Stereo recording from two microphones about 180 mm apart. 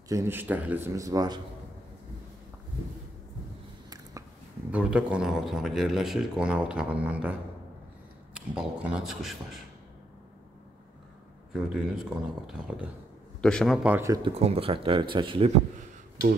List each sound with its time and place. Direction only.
0.1 s speech: 15° right (ahead or behind)
4.6 s speech: 5° right (ahead or behind)
8.4 s speech: 5° right (ahead or behind)
11.5 s a man's voice: centre (ahead or behind)
13.8 s speech: 15° right (ahead or behind)
14.2 s speech: 30° right (ahead or behind)